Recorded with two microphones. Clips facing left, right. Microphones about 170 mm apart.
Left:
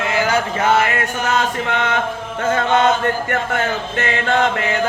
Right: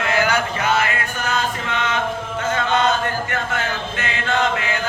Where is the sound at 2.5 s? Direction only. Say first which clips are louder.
Left 4 dB; 50° left (ahead or behind).